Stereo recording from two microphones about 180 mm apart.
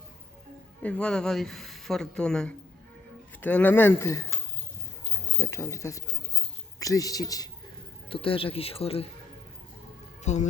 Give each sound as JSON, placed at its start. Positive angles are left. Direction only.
{"t": 0.8, "sound": "speech", "side_deg": 5}
{"t": 5.4, "sound": "a man's voice", "side_deg": 15}
{"t": 10.3, "sound": "speech", "side_deg": 40}